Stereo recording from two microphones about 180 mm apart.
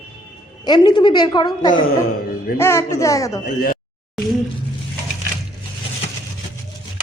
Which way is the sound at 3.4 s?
50° left (ahead or behind).